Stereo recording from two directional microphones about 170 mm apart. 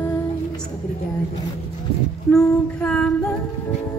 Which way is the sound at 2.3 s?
5° left (ahead or behind).